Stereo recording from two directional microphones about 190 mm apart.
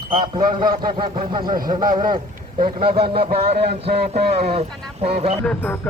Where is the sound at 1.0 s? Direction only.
25° right (ahead or behind).